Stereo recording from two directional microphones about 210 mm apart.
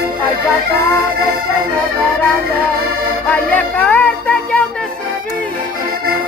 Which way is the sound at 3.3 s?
5° left (ahead or behind).